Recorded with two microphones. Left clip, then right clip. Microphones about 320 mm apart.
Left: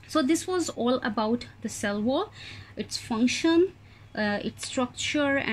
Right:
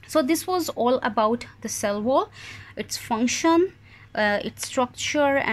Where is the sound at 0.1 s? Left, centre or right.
Centre.